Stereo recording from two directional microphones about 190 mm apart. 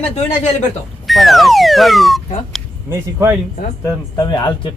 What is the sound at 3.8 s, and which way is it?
Speech, 20° left (ahead or behind).